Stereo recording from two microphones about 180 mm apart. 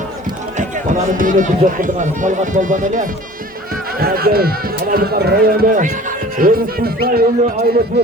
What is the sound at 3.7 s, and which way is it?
Speech, 55° right (ahead or behind).